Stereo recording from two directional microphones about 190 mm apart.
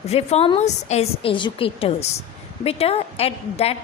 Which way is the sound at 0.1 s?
30° left (ahead or behind).